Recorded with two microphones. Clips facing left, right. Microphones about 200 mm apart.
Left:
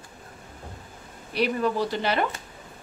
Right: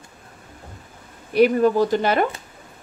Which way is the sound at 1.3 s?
50° right (ahead or behind).